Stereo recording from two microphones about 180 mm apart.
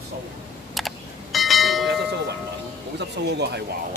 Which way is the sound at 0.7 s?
Centre (ahead or behind).